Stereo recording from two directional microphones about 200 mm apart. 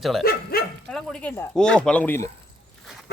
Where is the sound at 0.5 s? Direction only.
50° left (ahead or behind).